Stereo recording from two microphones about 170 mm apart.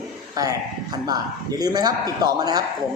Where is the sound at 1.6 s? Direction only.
25° right (ahead or behind).